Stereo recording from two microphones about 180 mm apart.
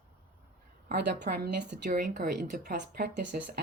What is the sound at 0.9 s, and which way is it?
A woman's voice, 65° right (ahead or behind).